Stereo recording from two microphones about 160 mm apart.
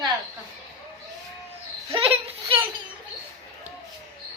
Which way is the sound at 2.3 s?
35° right (ahead or behind).